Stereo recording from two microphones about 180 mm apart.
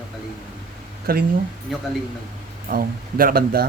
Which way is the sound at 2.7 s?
50° right (ahead or behind).